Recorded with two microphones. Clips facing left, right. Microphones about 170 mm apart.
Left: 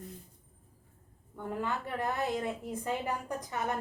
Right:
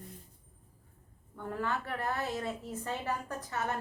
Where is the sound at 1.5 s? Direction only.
15° left (ahead or behind).